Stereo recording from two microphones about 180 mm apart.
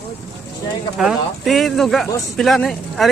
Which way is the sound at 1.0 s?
Centre (ahead or behind).